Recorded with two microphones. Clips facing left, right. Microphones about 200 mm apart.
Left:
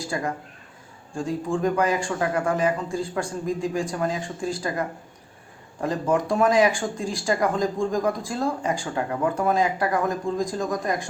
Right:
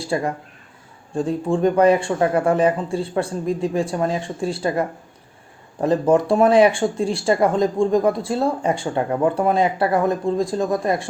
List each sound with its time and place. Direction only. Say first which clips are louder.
0.1 s speech: right 7 dB; 30° right (ahead or behind)
1.5 s speech: right 8 dB; 30° right (ahead or behind)